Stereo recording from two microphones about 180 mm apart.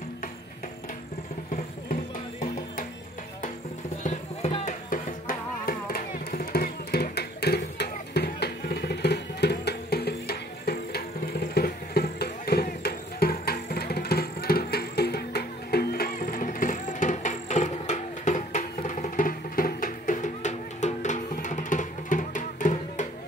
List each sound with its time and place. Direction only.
4.0 s music: 40° left (ahead or behind)
4.8 s music: 50° left (ahead or behind)